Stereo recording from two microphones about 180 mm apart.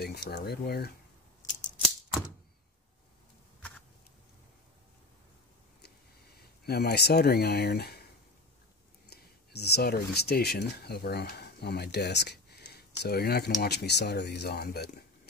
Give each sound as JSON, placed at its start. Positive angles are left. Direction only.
{"t": 0.0, "sound": "speech", "side_deg": 60}
{"t": 6.6, "sound": "speech", "side_deg": 65}
{"t": 9.1, "sound": "speech", "side_deg": 65}